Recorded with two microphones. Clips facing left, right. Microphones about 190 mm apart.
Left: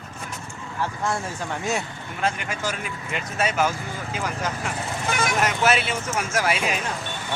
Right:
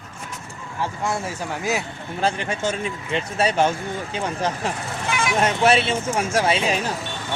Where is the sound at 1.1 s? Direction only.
10° right (ahead or behind).